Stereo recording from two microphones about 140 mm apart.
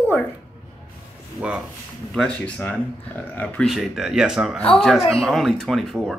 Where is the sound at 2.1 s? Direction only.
5° left (ahead or behind).